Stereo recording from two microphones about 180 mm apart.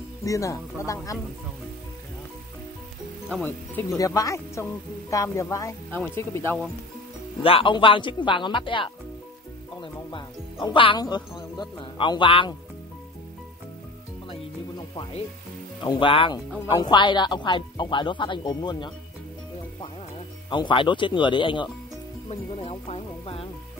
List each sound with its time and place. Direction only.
0.2 s speech: 20° left (ahead or behind)
3.3 s speech: 10° left (ahead or behind)
7.4 s speech: 30° left (ahead or behind)
15.8 s speech: 25° left (ahead or behind)
20.4 s speech: 25° left (ahead or behind)